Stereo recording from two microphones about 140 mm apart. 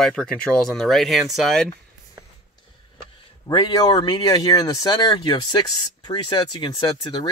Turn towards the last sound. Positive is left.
turn(degrees=35)  # may be behind; listen again after turning